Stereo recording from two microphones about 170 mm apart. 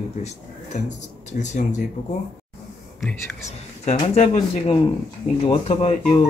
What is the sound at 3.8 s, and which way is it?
Speech, 40° left (ahead or behind).